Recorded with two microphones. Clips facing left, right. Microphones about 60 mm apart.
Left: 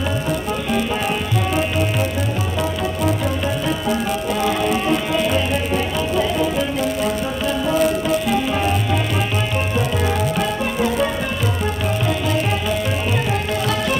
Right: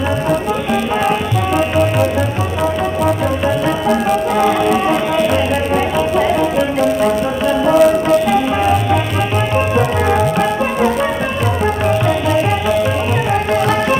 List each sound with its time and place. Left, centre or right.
4.4 s music: right
7.8 s music: centre
9.8 s music: right
13.3 s music: right